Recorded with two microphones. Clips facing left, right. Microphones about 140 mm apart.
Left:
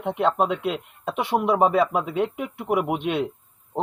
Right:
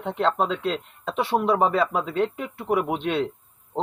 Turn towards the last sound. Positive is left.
turn(degrees=15)  # may be behind; listen again after turning